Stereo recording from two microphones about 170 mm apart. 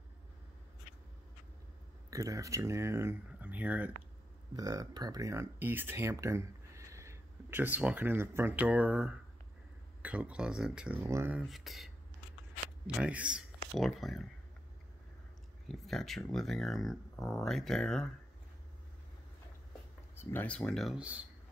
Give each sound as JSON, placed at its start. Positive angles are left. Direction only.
{"t": 2.0, "sound": "speech", "side_deg": -20}
{"t": 4.6, "sound": "speech", "side_deg": -20}
{"t": 11.3, "sound": "speech", "side_deg": 0}
{"t": 15.7, "sound": "speech", "side_deg": 0}
{"t": 20.2, "sound": "speech", "side_deg": 15}